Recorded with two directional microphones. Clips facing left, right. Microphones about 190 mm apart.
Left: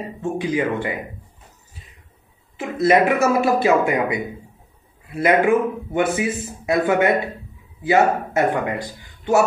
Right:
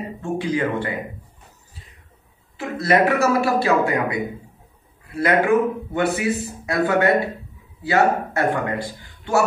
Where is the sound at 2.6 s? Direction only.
20° left (ahead or behind).